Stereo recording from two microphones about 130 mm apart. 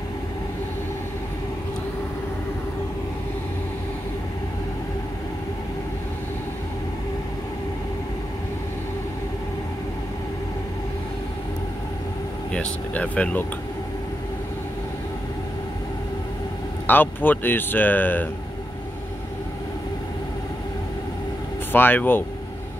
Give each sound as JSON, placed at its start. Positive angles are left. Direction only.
{"t": 12.5, "sound": "speech", "side_deg": 10}
{"t": 16.8, "sound": "speech", "side_deg": 15}
{"t": 21.7, "sound": "speech", "side_deg": 15}